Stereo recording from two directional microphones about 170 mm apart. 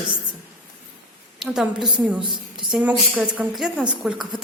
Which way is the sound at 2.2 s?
30° right (ahead or behind).